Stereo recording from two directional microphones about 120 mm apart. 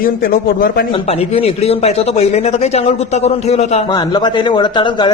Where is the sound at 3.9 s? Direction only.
40° left (ahead or behind).